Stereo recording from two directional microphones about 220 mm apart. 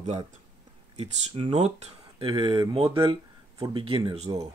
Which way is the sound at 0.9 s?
30° right (ahead or behind).